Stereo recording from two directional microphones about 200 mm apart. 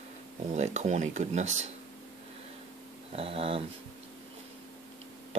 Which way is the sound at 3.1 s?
30° right (ahead or behind).